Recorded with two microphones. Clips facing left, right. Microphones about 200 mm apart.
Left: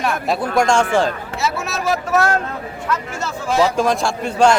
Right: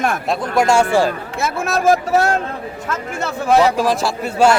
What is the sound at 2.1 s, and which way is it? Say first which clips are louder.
Speech: right 1 dB; 30° right (ahead or behind).